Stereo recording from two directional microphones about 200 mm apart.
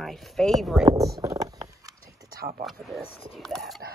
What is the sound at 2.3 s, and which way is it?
Speech, 50° right (ahead or behind).